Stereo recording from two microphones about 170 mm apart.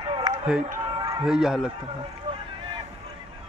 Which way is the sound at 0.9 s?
20° right (ahead or behind).